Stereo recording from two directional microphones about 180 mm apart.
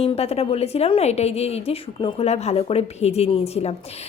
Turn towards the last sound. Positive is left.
turn(degrees=35)  # may be behind; listen again after turning